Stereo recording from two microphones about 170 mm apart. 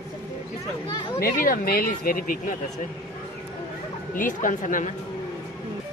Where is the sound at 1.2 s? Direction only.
60° left (ahead or behind).